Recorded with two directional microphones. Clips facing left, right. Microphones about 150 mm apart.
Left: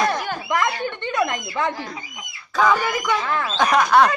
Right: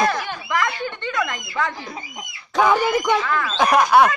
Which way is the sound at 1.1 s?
25° left (ahead or behind).